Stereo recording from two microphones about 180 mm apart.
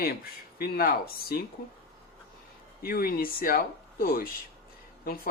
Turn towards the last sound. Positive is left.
turn(degrees=55)  # may be behind; listen again after turning